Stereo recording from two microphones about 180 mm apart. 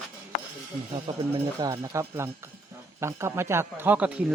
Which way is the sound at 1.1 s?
25° right (ahead or behind).